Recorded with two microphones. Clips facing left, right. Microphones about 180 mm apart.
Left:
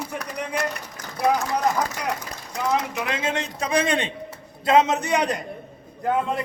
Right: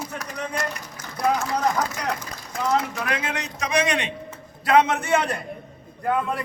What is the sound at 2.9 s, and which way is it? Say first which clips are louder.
A man's voice: left 2 dB; 20° left (ahead or behind).